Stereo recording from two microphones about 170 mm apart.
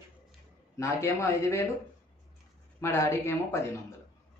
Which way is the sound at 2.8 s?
15° left (ahead or behind).